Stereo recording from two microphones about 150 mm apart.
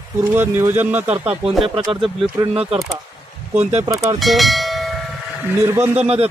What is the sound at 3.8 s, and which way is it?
Speech, 20° right (ahead or behind).